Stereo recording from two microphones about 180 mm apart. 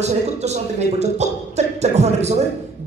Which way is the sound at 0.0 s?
40° right (ahead or behind).